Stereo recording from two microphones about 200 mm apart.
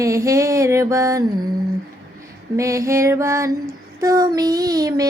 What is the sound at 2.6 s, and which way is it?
Child singing, 15° right (ahead or behind).